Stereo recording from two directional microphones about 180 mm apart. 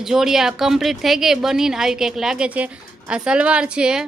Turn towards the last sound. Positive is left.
turn(degrees=-5)  # may be behind; listen again after turning